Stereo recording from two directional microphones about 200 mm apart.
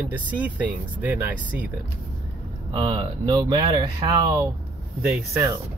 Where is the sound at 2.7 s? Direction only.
25° right (ahead or behind).